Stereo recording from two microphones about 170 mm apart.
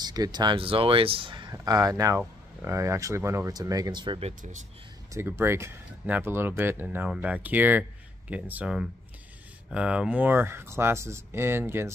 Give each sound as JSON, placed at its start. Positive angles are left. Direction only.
{"t": 0.0, "sound": "speech", "side_deg": -25}
{"t": 5.1, "sound": "speech", "side_deg": -15}